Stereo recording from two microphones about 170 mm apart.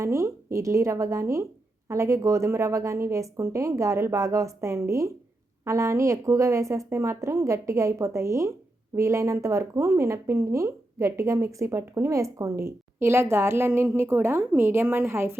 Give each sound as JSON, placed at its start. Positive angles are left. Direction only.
{"t": 0.0, "sound": "speech", "side_deg": -15}